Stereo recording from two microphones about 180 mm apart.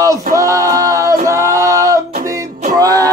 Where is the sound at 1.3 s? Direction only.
15° right (ahead or behind).